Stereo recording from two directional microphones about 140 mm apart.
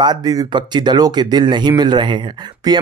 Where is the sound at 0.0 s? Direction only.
30° right (ahead or behind).